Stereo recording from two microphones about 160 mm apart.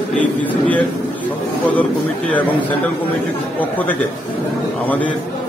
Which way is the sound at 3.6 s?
10° left (ahead or behind).